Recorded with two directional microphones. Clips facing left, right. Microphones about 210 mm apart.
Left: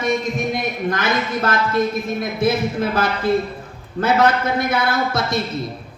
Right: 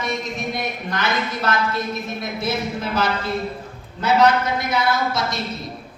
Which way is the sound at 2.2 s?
55° left (ahead or behind).